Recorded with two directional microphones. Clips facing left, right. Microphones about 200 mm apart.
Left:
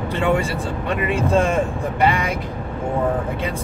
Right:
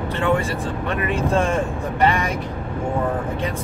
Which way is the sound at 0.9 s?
15° left (ahead or behind).